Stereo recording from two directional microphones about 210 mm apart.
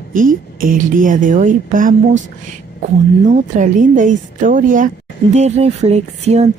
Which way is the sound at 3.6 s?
40° right (ahead or behind).